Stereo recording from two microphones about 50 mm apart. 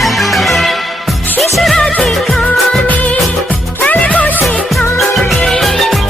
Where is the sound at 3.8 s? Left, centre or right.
Left.